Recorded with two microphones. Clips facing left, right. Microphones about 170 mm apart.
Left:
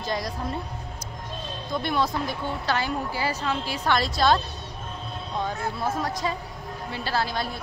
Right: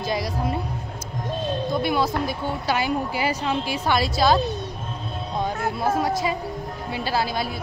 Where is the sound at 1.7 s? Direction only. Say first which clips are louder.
Right 1 dB; 5° right (ahead or behind).